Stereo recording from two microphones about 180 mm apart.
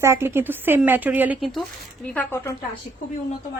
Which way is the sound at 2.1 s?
10° left (ahead or behind).